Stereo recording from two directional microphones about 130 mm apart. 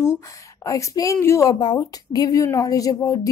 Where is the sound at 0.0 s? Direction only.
20° left (ahead or behind).